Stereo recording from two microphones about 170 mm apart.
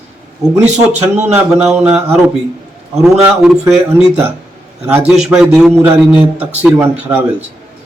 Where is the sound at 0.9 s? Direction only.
40° right (ahead or behind).